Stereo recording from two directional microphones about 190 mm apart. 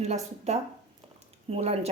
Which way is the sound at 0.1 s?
35° right (ahead or behind).